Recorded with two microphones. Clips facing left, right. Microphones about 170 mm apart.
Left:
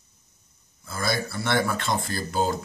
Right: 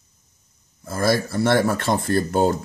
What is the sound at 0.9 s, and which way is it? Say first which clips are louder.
Speech: right 7 dB; 45° right (ahead or behind).